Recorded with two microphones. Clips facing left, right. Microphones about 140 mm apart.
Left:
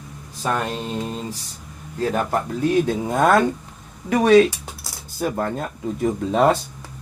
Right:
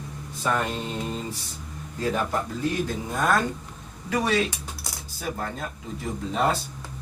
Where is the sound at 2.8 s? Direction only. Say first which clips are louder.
Left 7 dB; 65° left (ahead or behind).